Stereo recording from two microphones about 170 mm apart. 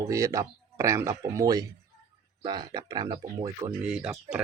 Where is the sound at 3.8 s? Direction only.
5° right (ahead or behind).